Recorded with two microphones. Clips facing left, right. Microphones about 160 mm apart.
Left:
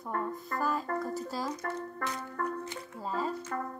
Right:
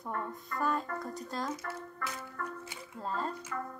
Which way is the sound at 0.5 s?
45° left (ahead or behind).